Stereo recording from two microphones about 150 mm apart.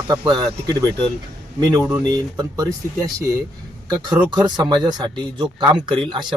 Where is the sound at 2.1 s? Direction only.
25° right (ahead or behind).